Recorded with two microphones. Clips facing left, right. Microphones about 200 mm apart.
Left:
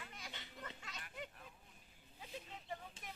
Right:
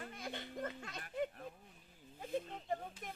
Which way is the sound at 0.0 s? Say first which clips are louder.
Right 9 dB; 50° right (ahead or behind).